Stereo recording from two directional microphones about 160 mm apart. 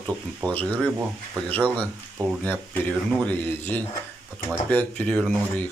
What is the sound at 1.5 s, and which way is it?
A man's voice, 10° left (ahead or behind).